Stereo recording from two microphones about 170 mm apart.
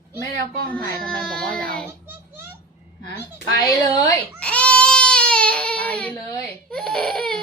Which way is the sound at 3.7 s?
20° left (ahead or behind).